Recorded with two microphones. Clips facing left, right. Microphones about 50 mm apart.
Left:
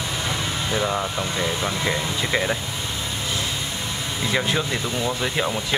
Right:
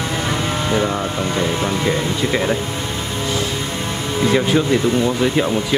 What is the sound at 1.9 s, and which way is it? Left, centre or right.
Speech, centre.